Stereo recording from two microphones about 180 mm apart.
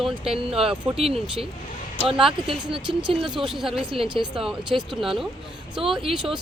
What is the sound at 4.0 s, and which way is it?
Speech, 25° right (ahead or behind).